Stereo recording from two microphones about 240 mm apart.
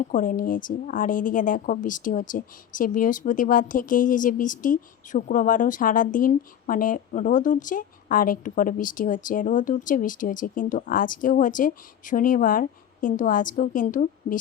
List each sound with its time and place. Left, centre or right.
0.1 s a woman's voice: left